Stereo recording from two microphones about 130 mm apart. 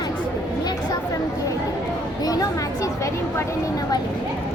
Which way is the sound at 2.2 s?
30° left (ahead or behind).